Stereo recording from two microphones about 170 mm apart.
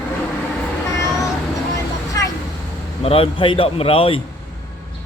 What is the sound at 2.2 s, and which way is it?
Vehicle, 20° left (ahead or behind).